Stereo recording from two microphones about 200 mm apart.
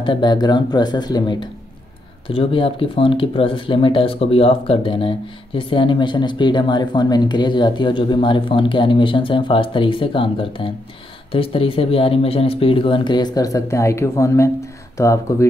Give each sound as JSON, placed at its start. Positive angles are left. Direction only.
{"t": 0.0, "sound": "speech", "side_deg": 25}